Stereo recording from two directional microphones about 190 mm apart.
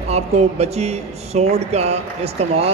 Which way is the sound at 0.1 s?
35° right (ahead or behind).